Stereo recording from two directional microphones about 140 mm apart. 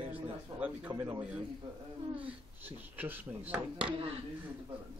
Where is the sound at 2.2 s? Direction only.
10° right (ahead or behind).